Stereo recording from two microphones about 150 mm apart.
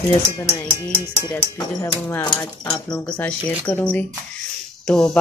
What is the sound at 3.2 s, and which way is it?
Speech, 10° left (ahead or behind).